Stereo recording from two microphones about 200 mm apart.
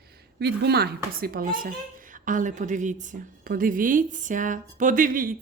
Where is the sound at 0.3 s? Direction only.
55° right (ahead or behind).